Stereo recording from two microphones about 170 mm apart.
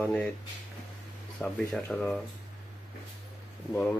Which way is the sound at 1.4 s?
5° left (ahead or behind).